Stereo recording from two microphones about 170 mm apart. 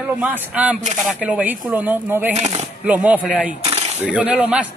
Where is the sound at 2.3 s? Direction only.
40° right (ahead or behind).